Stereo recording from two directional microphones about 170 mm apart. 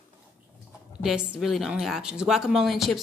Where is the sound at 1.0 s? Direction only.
Centre (ahead or behind).